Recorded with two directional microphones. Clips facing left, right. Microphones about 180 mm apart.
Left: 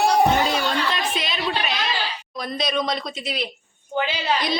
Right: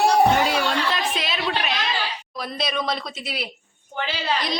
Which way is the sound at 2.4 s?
5° right (ahead or behind).